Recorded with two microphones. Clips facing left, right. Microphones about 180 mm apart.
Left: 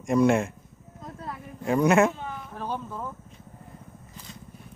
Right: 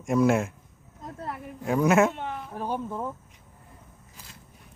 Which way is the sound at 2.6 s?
15° right (ahead or behind).